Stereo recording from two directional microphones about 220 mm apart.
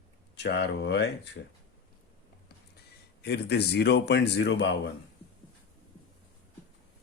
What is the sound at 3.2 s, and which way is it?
Speech, 50° left (ahead or behind).